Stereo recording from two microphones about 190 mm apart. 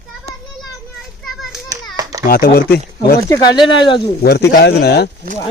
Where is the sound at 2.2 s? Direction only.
50° left (ahead or behind).